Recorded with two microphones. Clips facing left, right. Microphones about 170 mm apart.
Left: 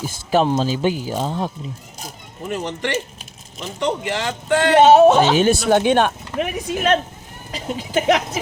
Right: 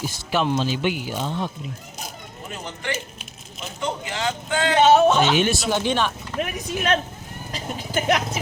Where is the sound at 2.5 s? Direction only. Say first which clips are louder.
Left 7 dB; 75° left (ahead or behind).